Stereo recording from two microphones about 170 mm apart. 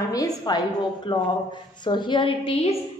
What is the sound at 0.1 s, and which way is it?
A woman's voice, 20° left (ahead or behind).